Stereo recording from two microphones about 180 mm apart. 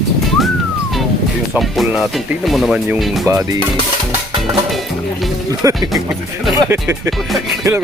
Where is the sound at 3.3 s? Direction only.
20° right (ahead or behind).